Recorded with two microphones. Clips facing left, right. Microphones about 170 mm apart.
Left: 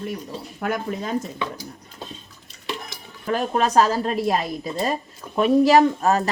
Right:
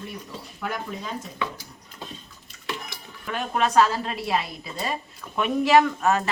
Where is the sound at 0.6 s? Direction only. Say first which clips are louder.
Left 6 dB; 50° left (ahead or behind).